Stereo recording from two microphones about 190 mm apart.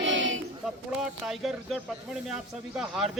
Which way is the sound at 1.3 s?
Centre (ahead or behind).